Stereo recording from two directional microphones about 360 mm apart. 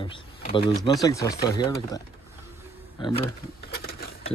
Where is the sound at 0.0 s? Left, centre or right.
Centre.